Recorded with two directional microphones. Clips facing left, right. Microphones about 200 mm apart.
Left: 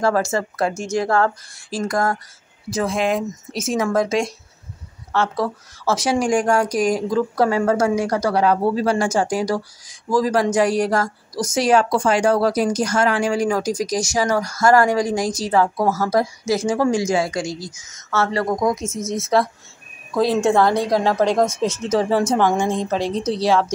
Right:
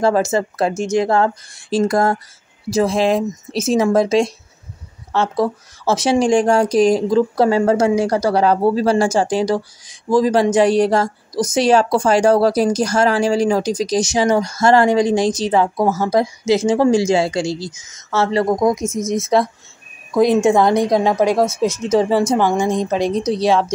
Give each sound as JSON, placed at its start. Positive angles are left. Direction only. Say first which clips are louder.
{"t": 0.0, "sound": "a woman's voice", "louder": "right 4 dB", "side_deg": -20}